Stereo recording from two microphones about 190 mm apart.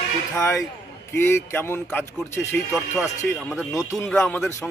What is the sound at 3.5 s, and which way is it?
Speech, centre (ahead or behind).